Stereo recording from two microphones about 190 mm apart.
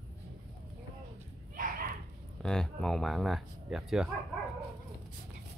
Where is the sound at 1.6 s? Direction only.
45° right (ahead or behind).